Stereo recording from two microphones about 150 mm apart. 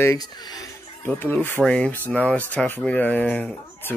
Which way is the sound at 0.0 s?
25° left (ahead or behind).